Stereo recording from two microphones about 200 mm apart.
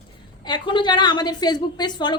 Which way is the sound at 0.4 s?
20° left (ahead or behind).